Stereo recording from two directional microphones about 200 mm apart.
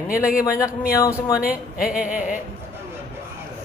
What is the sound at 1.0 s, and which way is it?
Speech, 15° left (ahead or behind).